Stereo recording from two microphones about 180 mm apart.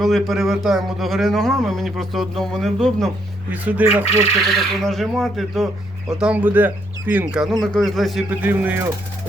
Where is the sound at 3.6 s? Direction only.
10° right (ahead or behind).